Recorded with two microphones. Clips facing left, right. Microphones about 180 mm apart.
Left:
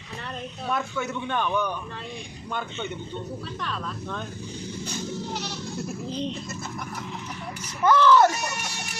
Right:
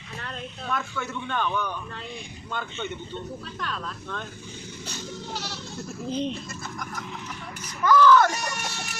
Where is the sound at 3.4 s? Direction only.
Centre (ahead or behind).